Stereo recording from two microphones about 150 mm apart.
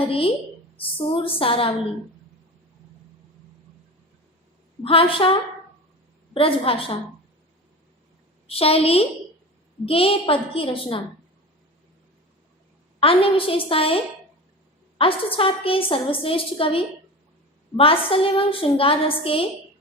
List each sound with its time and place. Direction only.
0.1 s a woman's voice: 40° left (ahead or behind)
4.8 s a woman's voice: 35° left (ahead or behind)
8.4 s a woman's voice: 40° left (ahead or behind)
13.0 s a woman's voice: 40° left (ahead or behind)